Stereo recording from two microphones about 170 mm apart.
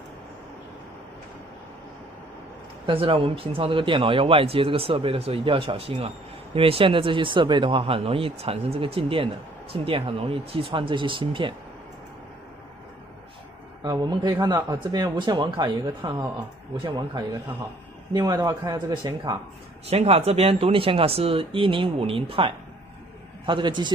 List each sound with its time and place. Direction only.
2.9 s speech: 30° right (ahead or behind)
13.8 s speech: 25° right (ahead or behind)
19.9 s speech: 40° right (ahead or behind)